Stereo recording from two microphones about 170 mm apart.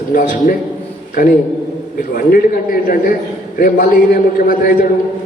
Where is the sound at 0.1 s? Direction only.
55° left (ahead or behind).